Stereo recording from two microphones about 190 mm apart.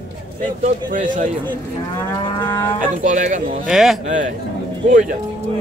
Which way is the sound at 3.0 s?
40° right (ahead or behind).